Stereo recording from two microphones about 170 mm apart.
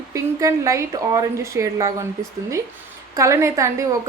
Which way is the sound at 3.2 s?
20° right (ahead or behind).